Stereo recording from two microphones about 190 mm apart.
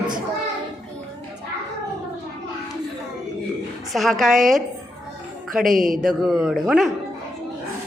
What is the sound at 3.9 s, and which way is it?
Speech, centre (ahead or behind).